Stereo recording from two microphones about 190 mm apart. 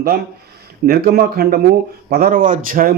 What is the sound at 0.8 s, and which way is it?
Speech, 50° right (ahead or behind).